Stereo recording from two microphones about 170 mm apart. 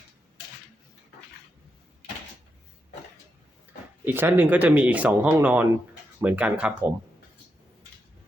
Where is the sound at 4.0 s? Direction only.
10° right (ahead or behind).